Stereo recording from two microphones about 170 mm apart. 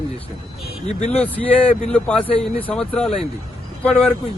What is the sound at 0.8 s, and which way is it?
Speech, 40° left (ahead or behind).